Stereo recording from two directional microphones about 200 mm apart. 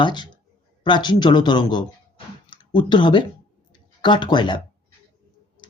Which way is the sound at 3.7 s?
25° left (ahead or behind).